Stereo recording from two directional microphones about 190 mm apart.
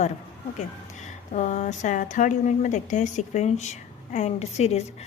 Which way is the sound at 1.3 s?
40° left (ahead or behind).